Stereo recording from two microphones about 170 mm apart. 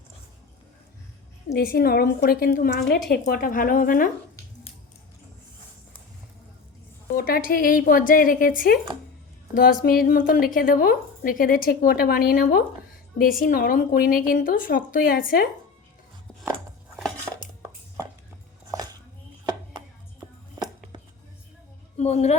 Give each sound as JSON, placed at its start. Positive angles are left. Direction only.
{"t": 1.5, "sound": "a woman's voice", "side_deg": 65}
{"t": 7.2, "sound": "a woman's voice", "side_deg": 60}
{"t": 21.9, "sound": "a woman's voice", "side_deg": 40}